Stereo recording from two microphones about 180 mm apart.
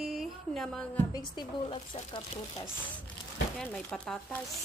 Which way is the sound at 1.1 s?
25° left (ahead or behind).